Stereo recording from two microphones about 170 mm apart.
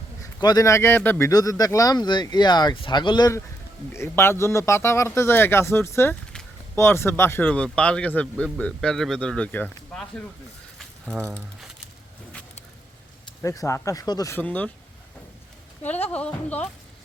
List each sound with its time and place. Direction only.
0.3 s speech: 25° left (ahead or behind); by 10.2 s 5° left (ahead or behind)
10.8 s a sound: 10° right (ahead or behind)
13.4 s speech: 20° left (ahead or behind)
15.9 s speech: 10° left (ahead or behind)